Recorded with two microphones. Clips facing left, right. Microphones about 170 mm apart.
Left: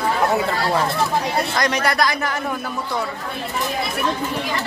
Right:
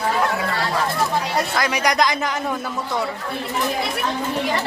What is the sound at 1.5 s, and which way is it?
Speech, 5° right (ahead or behind).